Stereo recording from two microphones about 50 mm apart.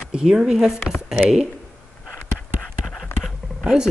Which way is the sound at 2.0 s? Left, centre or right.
Left.